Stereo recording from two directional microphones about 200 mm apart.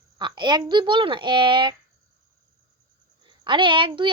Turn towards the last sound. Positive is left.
turn(degrees=-25)  # may be behind; listen again after turning